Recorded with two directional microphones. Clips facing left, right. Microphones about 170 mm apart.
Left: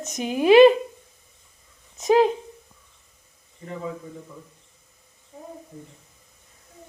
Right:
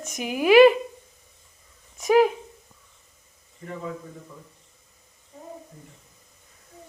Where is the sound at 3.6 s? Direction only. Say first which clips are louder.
Left 1 dB; 20° left (ahead or behind).